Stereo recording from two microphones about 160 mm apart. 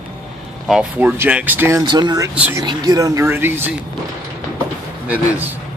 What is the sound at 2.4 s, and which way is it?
Speech, 10° right (ahead or behind).